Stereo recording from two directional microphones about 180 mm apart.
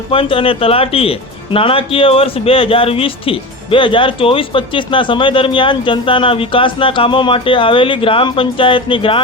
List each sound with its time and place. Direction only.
0.1 s speech: 30° left (ahead or behind)